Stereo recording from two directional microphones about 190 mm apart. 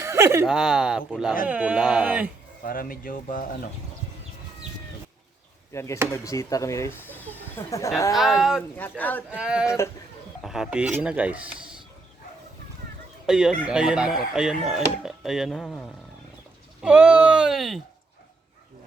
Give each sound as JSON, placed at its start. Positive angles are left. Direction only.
{"t": 0.0, "sound": "a sound", "side_deg": -15}
{"t": 0.4, "sound": "speech", "side_deg": -5}
{"t": 2.6, "sound": "speech", "side_deg": 45}
{"t": 5.7, "sound": "speech", "side_deg": 15}
{"t": 8.4, "sound": "speech", "side_deg": -5}
{"t": 8.7, "sound": "speech", "side_deg": 10}
{"t": 9.3, "sound": "speech", "side_deg": -5}
{"t": 9.6, "sound": "speech", "side_deg": 15}
{"t": 10.4, "sound": "speech", "side_deg": 0}
{"t": 13.2, "sound": "speech", "side_deg": -5}